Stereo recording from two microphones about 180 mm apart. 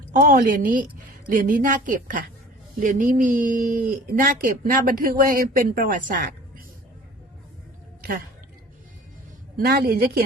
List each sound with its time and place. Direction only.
0.1 s speech: 50° right (ahead or behind)
9.6 s a woman's voice: 60° right (ahead or behind)